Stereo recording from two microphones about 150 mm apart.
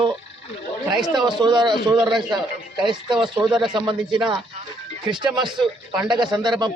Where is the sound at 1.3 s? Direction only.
30° right (ahead or behind).